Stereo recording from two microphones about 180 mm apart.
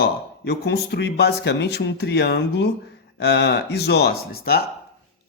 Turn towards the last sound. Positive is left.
turn(degrees=60)  # may be behind; listen again after turning